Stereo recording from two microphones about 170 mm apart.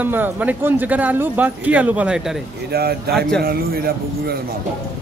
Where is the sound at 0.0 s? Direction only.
10° right (ahead or behind).